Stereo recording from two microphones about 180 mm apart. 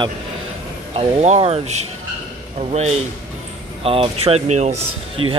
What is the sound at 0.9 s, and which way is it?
Speech, 35° right (ahead or behind).